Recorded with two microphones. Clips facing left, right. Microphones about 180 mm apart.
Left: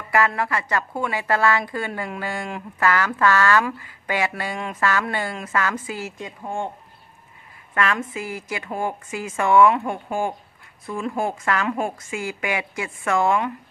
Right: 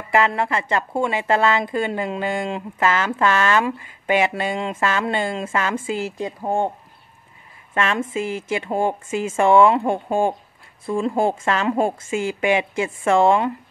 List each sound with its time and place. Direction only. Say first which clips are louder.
0.1 s a woman's voice: right 2 dB; 25° right (ahead or behind)
7.7 s a woman's voice: right 2 dB; 25° right (ahead or behind)